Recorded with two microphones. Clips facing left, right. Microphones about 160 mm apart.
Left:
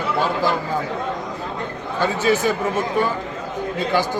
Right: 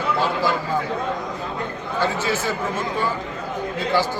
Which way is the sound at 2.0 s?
15° left (ahead or behind).